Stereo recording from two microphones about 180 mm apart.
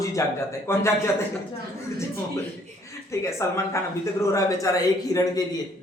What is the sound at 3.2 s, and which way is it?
Speech, 15° left (ahead or behind).